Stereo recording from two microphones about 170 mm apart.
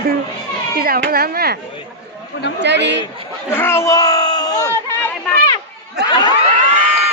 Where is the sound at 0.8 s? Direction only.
60° right (ahead or behind).